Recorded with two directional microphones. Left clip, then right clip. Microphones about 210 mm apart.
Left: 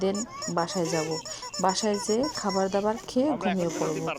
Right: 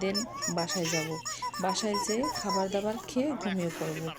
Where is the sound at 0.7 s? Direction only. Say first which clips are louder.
Left 3 dB; 35° left (ahead or behind).